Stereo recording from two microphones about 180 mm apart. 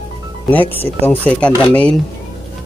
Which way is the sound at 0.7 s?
10° left (ahead or behind).